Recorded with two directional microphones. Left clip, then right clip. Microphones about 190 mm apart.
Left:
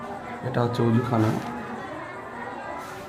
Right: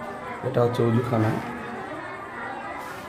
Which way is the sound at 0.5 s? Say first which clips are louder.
Right 2 dB; 10° right (ahead or behind).